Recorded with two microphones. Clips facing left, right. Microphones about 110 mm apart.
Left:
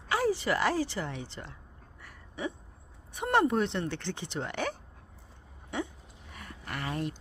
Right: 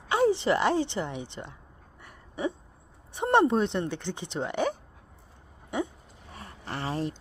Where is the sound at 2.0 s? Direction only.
25° right (ahead or behind).